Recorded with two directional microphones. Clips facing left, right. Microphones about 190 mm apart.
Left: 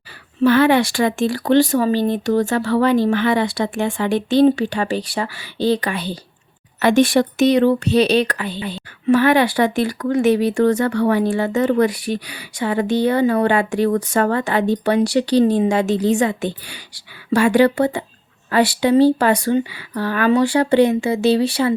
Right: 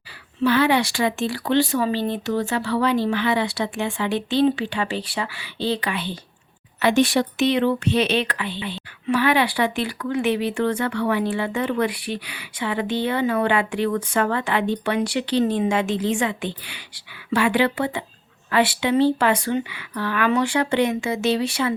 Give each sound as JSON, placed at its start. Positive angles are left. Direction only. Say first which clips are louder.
{"t": 0.4, "sound": "speech", "louder": "left 5 dB", "side_deg": 50}